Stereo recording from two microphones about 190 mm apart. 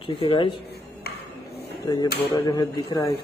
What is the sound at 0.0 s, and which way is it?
Speech, 25° left (ahead or behind).